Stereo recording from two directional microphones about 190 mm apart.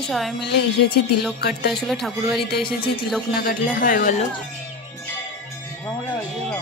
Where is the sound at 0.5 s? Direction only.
60° left (ahead or behind).